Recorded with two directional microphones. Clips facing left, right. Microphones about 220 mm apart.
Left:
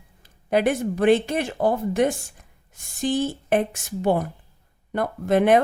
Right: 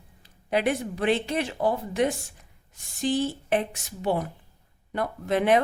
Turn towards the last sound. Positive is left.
turn(degrees=50)  # may be behind; listen again after turning